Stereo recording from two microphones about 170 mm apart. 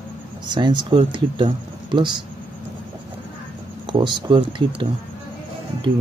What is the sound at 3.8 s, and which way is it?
Speech, 25° right (ahead or behind).